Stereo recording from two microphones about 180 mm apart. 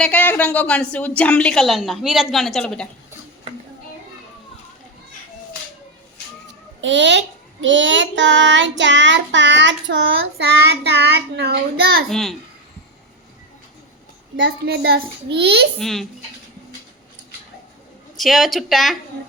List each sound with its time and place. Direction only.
0.0 s a woman's voice: 10° left (ahead or behind)
6.8 s a child's voice: 85° right; by 11.5 s 65° right (ahead or behind)
12.0 s a woman's voice: centre (ahead or behind)
14.4 s a child's voice: 65° right (ahead or behind)
15.8 s a woman's voice: centre (ahead or behind)
18.2 s a woman's voice: centre (ahead or behind)